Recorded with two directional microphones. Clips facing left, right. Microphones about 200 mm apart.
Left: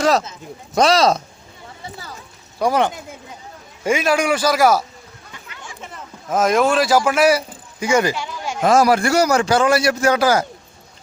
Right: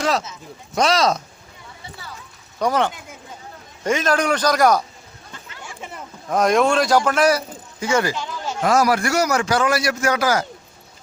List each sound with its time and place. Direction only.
0.0 s speech: 40° left (ahead or behind)
2.6 s a man's voice: 10° left (ahead or behind)
6.2 s a man's voice: centre (ahead or behind)
8.6 s a man's voice: 25° left (ahead or behind)